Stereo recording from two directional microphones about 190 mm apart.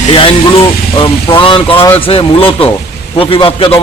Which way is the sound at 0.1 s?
30° left (ahead or behind).